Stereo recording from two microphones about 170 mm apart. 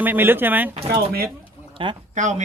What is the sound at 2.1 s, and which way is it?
Speech, 45° right (ahead or behind).